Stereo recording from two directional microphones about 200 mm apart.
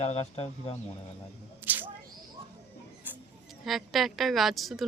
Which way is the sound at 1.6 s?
10° right (ahead or behind).